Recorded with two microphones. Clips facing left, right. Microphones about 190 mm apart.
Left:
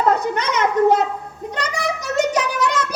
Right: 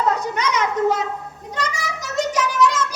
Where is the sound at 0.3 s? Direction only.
55° left (ahead or behind).